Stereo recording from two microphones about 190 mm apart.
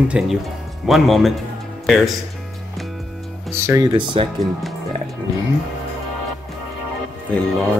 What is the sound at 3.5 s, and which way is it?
Speech, 15° right (ahead or behind).